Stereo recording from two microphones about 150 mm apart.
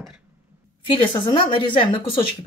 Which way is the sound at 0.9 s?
35° left (ahead or behind).